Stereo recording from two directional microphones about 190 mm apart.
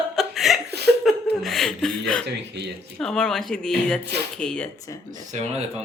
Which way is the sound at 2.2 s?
60° right (ahead or behind).